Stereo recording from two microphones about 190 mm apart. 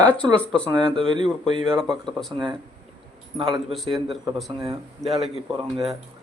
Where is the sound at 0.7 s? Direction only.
25° right (ahead or behind).